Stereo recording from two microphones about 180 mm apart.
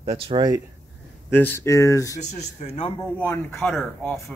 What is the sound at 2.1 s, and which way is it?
Speech, 35° left (ahead or behind).